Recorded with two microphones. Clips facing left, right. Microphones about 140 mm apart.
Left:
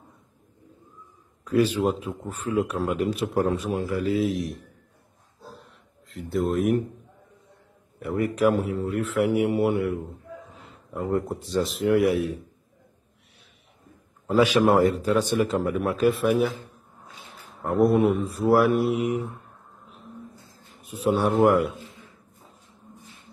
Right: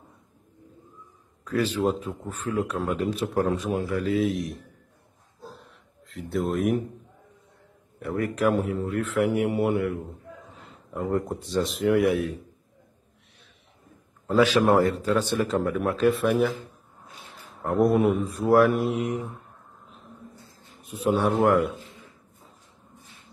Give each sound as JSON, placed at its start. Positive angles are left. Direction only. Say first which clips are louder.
{"t": 1.4, "sound": "a man's voice", "louder": "left 3 dB", "side_deg": 10}
{"t": 5.6, "sound": "a sound", "louder": "even", "side_deg": 0}
{"t": 8.0, "sound": "speech", "louder": "left 2 dB", "side_deg": 5}
{"t": 14.2, "sound": "a man's voice", "louder": "left 1 dB", "side_deg": 10}
{"t": 20.9, "sound": "speech", "louder": "left 1 dB", "side_deg": 0}